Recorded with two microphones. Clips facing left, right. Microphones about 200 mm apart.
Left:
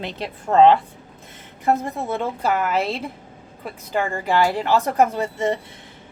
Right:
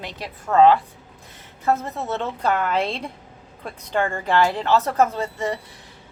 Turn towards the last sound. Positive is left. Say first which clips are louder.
# left 3 dB
turn(degrees=20)  # may be behind; listen again after turning